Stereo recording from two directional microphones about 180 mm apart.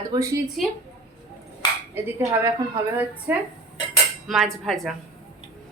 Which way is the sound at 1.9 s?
15° right (ahead or behind).